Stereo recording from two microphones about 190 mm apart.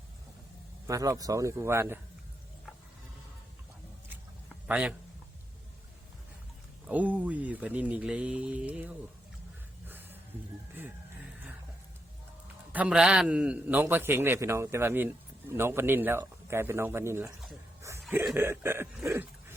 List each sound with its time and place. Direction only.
0.9 s a man's voice: 20° right (ahead or behind)
4.7 s a man's voice: 5° right (ahead or behind)
6.8 s a man's voice: 10° right (ahead or behind)
9.8 s music: 10° right (ahead or behind)
12.7 s a man's voice: 5° right (ahead or behind)
18.3 s a man's voice: 10° right (ahead or behind)
19.0 s a sound: 10° right (ahead or behind)